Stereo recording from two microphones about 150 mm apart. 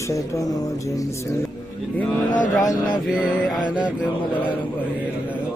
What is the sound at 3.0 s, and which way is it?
Speech, 5° right (ahead or behind).